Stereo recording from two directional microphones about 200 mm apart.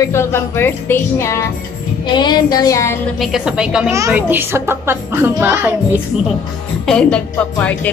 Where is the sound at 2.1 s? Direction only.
20° left (ahead or behind).